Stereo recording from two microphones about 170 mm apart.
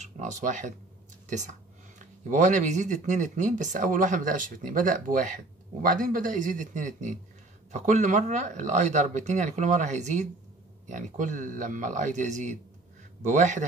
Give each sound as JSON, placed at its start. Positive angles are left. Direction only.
{"t": 0.0, "sound": "speech", "side_deg": -45}